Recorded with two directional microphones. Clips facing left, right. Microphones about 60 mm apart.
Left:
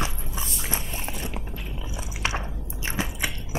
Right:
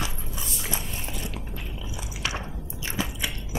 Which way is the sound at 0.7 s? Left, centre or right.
Left.